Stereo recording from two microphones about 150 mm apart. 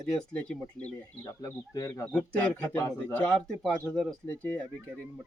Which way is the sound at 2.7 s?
20° left (ahead or behind).